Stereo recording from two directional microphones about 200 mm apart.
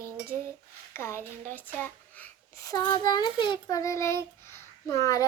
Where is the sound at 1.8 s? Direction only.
10° left (ahead or behind).